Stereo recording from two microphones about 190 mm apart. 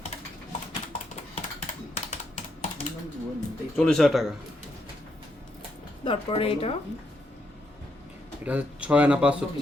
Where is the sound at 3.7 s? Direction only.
5° left (ahead or behind).